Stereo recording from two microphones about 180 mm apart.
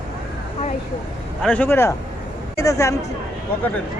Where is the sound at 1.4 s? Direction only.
10° left (ahead or behind).